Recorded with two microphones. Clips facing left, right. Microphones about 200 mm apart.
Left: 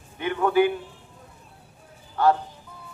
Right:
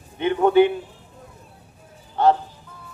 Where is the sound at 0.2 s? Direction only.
25° right (ahead or behind).